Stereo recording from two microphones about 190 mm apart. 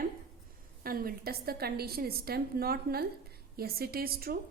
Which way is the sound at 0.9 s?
50° right (ahead or behind).